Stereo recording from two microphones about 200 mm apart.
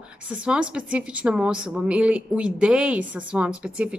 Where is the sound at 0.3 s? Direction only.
5° right (ahead or behind).